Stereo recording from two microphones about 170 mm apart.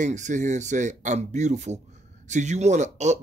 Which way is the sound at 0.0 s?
45° right (ahead or behind).